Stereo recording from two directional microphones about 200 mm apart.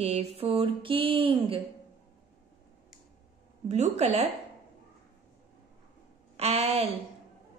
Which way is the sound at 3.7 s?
35° right (ahead or behind).